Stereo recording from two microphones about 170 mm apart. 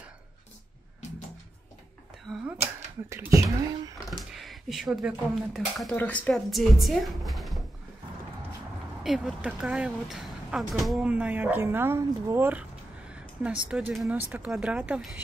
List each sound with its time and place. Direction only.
2.3 s speech: 5° right (ahead or behind)
3.1 s speech: 15° right (ahead or behind)
3.6 s a sound: 20° right (ahead or behind)
4.2 s speech: centre (ahead or behind)
9.0 s speech: centre (ahead or behind)